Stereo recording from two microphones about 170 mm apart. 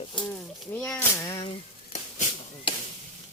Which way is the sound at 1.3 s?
30° left (ahead or behind).